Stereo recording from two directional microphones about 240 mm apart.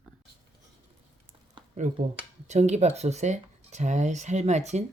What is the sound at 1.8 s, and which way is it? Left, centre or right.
Speech, right.